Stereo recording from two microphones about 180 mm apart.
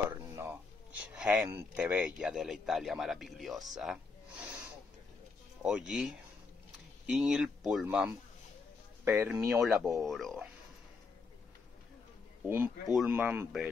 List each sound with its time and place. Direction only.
0.1 s a sound: 10° right (ahead or behind)
1.8 s speech: 5° right (ahead or behind)
10.0 s speech: centre (ahead or behind)
12.4 s speech: 10° right (ahead or behind)